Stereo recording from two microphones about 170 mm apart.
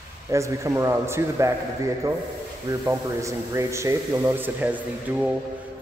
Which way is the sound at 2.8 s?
15° right (ahead or behind).